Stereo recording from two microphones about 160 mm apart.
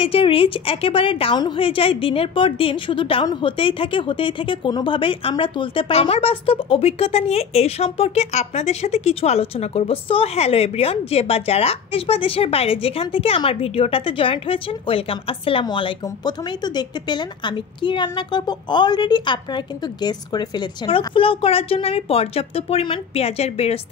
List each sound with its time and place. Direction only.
0.0 s a woman's voice: 35° left (ahead or behind)